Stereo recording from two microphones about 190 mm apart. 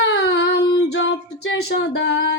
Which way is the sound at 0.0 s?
65° left (ahead or behind).